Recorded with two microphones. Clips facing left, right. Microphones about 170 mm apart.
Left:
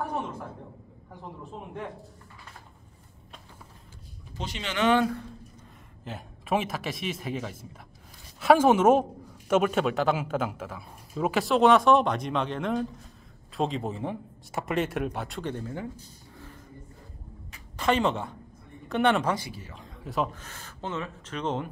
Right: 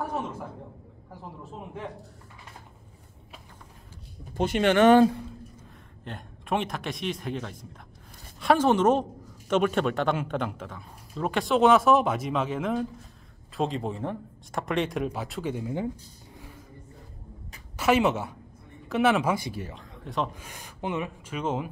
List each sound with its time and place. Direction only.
4.2 s speech: 55° right (ahead or behind)
6.0 s a woman's voice: 5° left (ahead or behind)
17.7 s a woman's voice: 5° right (ahead or behind)
19.7 s speech: 5° left (ahead or behind)
20.3 s speech: 15° right (ahead or behind)